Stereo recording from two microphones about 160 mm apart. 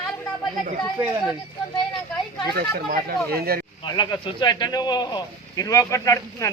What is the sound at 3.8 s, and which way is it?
A man's voice, 30° left (ahead or behind).